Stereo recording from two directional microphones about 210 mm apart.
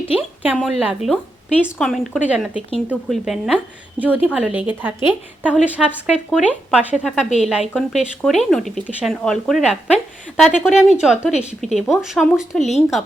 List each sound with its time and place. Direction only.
0.5 s a woman's voice: centre (ahead or behind)